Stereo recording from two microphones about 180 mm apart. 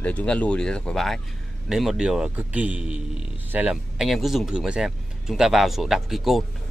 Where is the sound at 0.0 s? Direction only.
5° left (ahead or behind).